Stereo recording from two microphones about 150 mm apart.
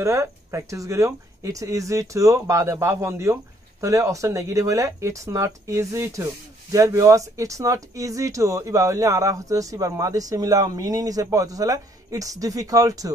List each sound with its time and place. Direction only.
0.0 s speech: 20° right (ahead or behind)